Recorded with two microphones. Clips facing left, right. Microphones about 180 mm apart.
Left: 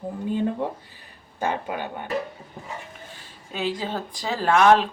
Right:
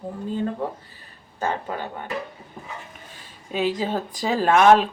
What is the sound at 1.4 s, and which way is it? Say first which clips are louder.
Speech: even; 15° left (ahead or behind).